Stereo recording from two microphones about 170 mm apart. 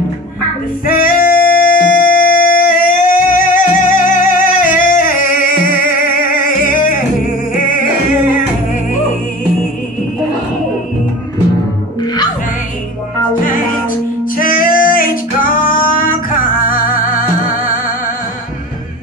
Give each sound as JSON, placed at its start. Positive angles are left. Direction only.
{"t": 0.8, "sound": "music", "side_deg": 55}
{"t": 12.0, "sound": "music", "side_deg": 25}
{"t": 13.4, "sound": "music", "side_deg": 55}